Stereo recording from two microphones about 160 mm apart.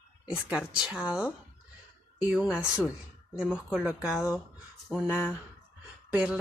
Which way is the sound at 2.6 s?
20° left (ahead or behind).